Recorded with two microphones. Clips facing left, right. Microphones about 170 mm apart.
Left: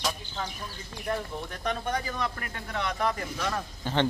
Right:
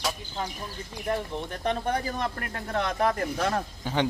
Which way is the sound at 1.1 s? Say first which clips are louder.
Right 2 dB; 30° right (ahead or behind).